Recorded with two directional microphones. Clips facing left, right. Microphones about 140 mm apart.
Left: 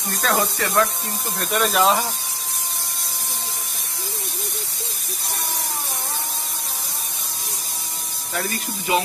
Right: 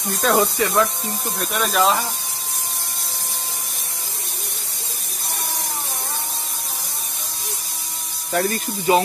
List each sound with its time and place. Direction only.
0.2 s speech: 10° right (ahead or behind)
1.4 s speech: centre (ahead or behind)
8.3 s speech: 40° right (ahead or behind)